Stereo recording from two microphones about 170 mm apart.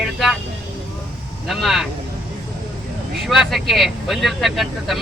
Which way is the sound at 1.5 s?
Centre (ahead or behind).